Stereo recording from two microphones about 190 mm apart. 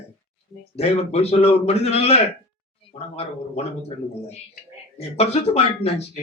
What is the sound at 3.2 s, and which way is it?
Speech, 30° left (ahead or behind).